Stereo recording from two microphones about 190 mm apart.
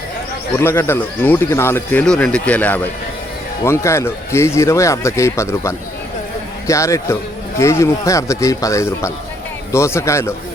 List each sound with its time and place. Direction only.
0.6 s speech: 10° left (ahead or behind)